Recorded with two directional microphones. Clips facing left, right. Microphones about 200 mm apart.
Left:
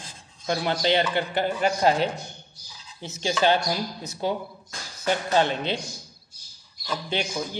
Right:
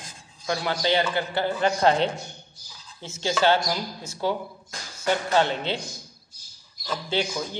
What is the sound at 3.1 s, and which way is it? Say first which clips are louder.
Speech: even; 15° left (ahead or behind).